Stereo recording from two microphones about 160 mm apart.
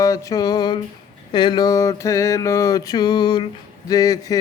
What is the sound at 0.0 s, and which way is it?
Mantra, 20° left (ahead or behind).